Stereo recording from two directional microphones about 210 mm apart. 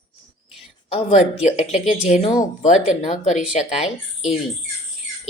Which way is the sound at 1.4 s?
30° left (ahead or behind).